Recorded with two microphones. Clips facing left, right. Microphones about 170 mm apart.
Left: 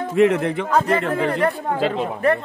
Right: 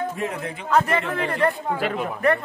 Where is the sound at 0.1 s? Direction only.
85° left.